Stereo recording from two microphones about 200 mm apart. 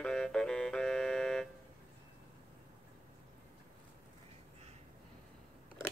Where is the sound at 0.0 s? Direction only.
5° left (ahead or behind).